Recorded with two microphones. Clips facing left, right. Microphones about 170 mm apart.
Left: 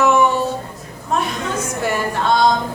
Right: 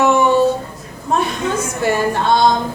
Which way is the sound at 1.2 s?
30° right (ahead or behind).